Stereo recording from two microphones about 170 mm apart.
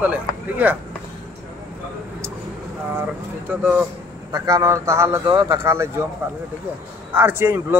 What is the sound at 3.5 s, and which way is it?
A man's voice, 10° right (ahead or behind).